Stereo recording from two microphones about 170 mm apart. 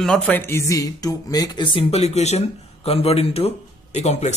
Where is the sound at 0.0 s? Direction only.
5° left (ahead or behind).